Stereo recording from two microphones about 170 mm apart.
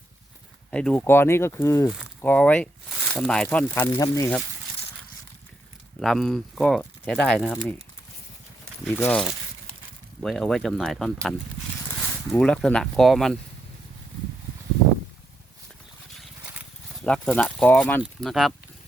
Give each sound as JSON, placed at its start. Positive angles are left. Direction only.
{"t": 0.7, "sound": "speech", "side_deg": 5}
{"t": 3.9, "sound": "speech", "side_deg": 20}
{"t": 6.0, "sound": "speech", "side_deg": 0}
{"t": 8.8, "sound": "speech", "side_deg": 10}
{"t": 12.4, "sound": "speech", "side_deg": 5}
{"t": 17.0, "sound": "speech", "side_deg": 5}